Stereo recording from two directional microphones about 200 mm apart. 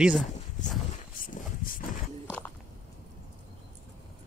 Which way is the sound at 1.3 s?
45° left (ahead or behind).